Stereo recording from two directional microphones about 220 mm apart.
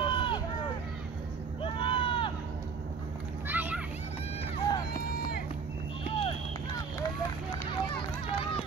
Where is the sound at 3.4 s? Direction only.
10° right (ahead or behind).